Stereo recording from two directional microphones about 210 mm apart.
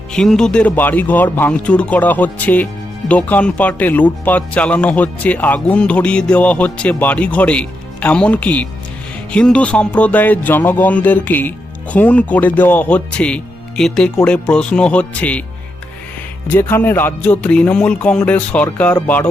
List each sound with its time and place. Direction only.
0.1 s speech: 5° left (ahead or behind)
16.5 s speech: 10° left (ahead or behind)